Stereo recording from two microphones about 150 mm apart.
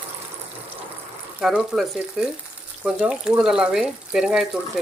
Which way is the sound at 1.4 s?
5° right (ahead or behind).